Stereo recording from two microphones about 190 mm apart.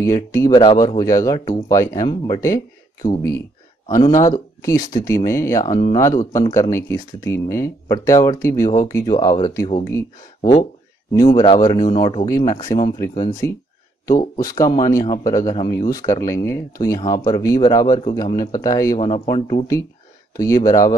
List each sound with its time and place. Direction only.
0.0 s speech: 15° left (ahead or behind)
11.2 s speech: 25° left (ahead or behind)
12.3 s speech: 20° left (ahead or behind)
18.9 s speech: 25° left (ahead or behind)